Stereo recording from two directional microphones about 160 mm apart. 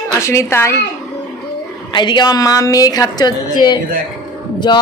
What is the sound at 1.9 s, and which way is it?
A woman's voice, 30° left (ahead or behind).